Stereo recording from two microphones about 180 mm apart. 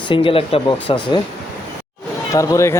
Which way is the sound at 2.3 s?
15° left (ahead or behind).